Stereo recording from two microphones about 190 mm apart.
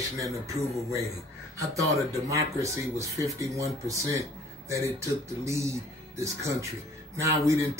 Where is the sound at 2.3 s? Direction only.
15° right (ahead or behind).